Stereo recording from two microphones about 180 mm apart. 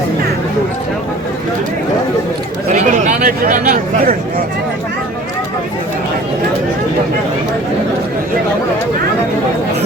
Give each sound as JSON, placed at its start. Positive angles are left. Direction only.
{"t": 2.9, "sound": "speech", "side_deg": -45}